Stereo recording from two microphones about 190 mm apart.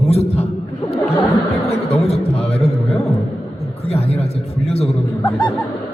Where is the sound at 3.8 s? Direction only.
30° left (ahead or behind).